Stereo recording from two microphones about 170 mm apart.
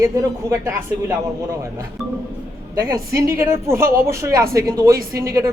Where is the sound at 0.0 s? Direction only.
20° right (ahead or behind).